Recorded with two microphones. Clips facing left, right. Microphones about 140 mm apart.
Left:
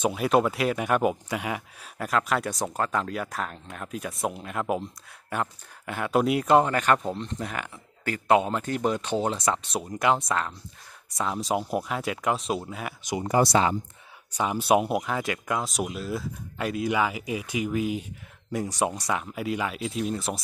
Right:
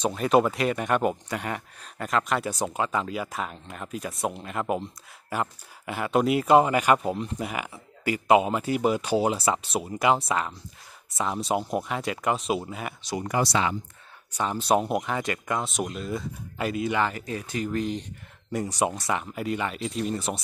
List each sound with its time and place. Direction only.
0.0 s speech: 5° left (ahead or behind)
13.0 s speech: 20° left (ahead or behind)
13.5 s speech: 35° left (ahead or behind)
14.3 s speech: 10° left (ahead or behind)